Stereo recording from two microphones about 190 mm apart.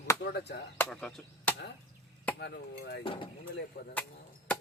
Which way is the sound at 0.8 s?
5° left (ahead or behind).